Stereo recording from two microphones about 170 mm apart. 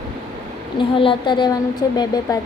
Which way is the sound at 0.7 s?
30° left (ahead or behind).